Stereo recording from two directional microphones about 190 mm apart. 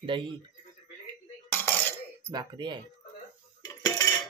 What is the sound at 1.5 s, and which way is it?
Coin, 10° left (ahead or behind).